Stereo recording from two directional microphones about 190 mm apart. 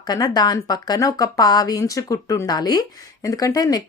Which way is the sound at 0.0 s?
20° left (ahead or behind).